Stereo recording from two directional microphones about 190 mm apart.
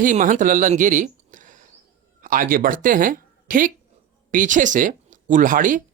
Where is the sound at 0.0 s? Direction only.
45° right (ahead or behind).